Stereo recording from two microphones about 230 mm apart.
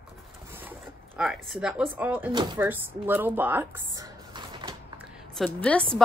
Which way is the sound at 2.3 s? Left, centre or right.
Centre.